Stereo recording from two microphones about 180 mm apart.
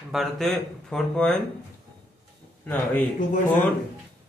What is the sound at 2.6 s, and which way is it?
Speech, 10° left (ahead or behind).